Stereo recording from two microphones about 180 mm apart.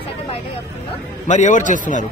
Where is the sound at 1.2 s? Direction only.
45° left (ahead or behind).